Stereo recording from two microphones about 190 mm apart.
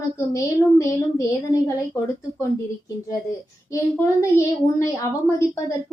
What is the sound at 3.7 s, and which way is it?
A woman's voice, 15° left (ahead or behind).